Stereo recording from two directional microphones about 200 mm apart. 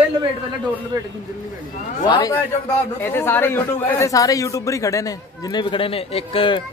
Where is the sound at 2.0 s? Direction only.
25° left (ahead or behind).